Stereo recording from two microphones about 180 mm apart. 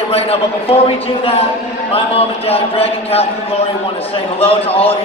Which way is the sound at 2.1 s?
35° left (ahead or behind).